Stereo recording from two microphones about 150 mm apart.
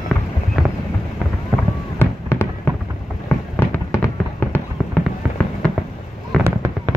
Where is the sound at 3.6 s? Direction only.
15° left (ahead or behind).